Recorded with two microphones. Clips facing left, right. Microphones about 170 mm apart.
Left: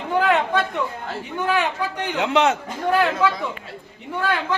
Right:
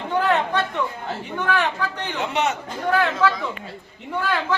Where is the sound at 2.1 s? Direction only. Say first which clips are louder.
Left 5 dB; 90° left.